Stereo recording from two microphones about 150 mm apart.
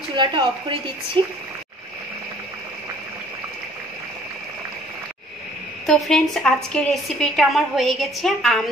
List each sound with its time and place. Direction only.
0.1 s speech: 35° right (ahead or behind)
5.9 s a woman's voice: 5° left (ahead or behind)